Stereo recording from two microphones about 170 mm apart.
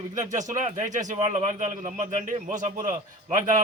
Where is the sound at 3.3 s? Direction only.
50° right (ahead or behind).